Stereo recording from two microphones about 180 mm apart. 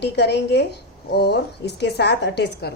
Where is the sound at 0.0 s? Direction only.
70° left (ahead or behind).